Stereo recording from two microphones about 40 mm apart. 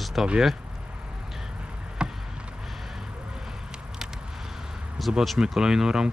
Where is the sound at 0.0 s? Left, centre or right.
Centre.